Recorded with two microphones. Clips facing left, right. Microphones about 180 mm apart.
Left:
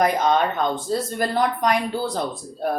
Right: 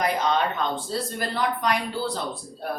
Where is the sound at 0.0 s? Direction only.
45° left (ahead or behind).